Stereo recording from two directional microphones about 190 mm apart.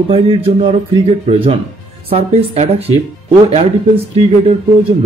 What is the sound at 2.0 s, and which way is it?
Speech, 35° right (ahead or behind).